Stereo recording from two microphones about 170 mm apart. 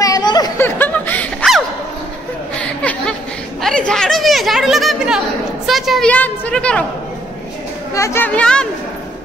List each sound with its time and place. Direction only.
0.0 s a sound: 25° left (ahead or behind)
0.6 s snicker: 10° left (ahead or behind)
2.6 s chatter: 5° left (ahead or behind)
5.7 s a woman's voice: centre (ahead or behind)
7.9 s speech: 15° left (ahead or behind)